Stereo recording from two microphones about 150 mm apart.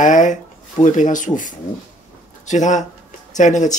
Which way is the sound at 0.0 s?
55° left (ahead or behind).